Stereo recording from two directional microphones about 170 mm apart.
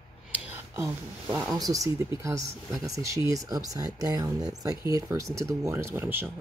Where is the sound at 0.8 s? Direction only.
15° right (ahead or behind).